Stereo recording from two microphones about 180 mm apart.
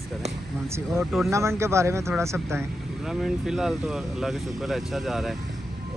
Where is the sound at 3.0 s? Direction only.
Centre (ahead or behind).